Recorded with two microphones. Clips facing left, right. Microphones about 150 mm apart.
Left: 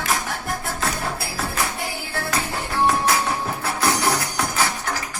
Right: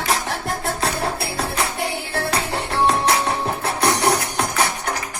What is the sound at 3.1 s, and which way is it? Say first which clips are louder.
Music: right 2 dB; 25° right (ahead or behind).